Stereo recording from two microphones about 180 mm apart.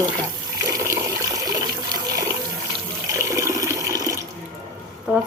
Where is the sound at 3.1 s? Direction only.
15° right (ahead or behind).